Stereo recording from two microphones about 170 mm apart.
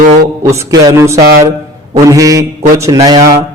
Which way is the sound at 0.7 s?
15° right (ahead or behind).